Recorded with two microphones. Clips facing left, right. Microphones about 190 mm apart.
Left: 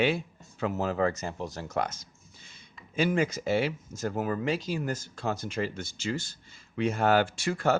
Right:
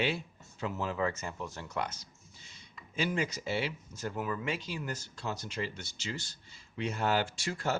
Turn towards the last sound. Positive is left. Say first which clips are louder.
# left 7 dB
turn(degrees=60)  # may be behind; listen again after turning